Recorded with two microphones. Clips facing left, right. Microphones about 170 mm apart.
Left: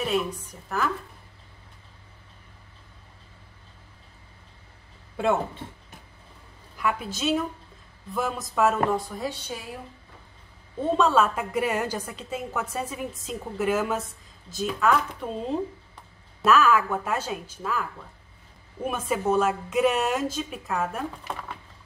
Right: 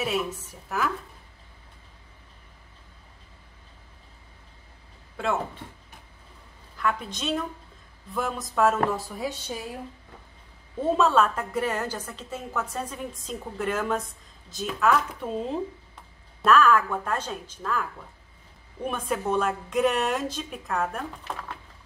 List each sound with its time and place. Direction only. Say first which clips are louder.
0.0 s a woman's voice: left 2 dB; 5° right (ahead or behind)
5.1 s speech: left 4 dB; 20° left (ahead or behind)
6.8 s a woman's voice: left 1 dB; 5° left (ahead or behind)
10.9 s a woman's voice: even; centre (ahead or behind)